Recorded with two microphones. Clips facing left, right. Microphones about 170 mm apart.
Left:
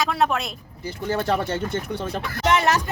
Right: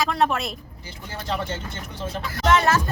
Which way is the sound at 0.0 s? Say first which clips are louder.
Even; centre (ahead or behind).